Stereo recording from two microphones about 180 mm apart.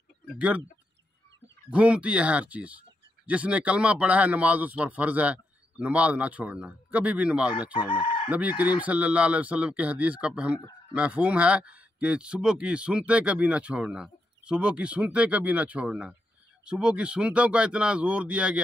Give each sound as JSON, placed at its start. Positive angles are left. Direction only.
{"t": 0.4, "sound": "speech", "side_deg": -5}
{"t": 1.7, "sound": "speech", "side_deg": -5}
{"t": 7.9, "sound": "chicken", "side_deg": 25}
{"t": 8.3, "sound": "speech", "side_deg": -10}